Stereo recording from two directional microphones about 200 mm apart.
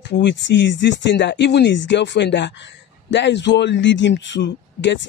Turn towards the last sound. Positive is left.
turn(degrees=65)  # may be behind; listen again after turning